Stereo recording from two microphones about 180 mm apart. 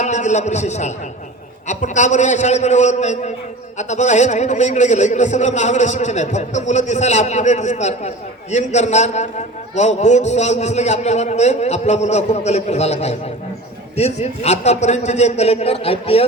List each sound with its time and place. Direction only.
0.0 s a man's voice: 40° left (ahead or behind)